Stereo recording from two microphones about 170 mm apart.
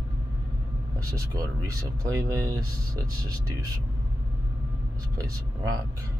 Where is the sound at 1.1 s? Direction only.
20° right (ahead or behind).